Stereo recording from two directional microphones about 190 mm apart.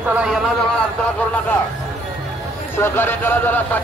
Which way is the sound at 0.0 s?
5° right (ahead or behind).